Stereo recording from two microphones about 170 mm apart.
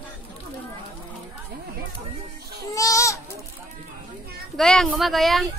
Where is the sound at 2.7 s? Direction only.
20° left (ahead or behind).